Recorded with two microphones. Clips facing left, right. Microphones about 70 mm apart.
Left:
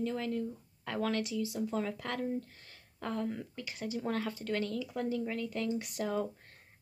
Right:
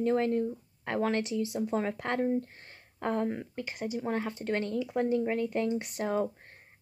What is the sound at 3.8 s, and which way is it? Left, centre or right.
Speech, centre.